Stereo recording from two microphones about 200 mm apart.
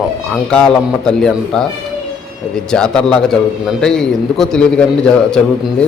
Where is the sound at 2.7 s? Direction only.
5° left (ahead or behind).